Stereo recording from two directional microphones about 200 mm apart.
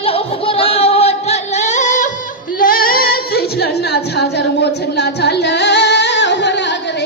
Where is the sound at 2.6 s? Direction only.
45° left (ahead or behind).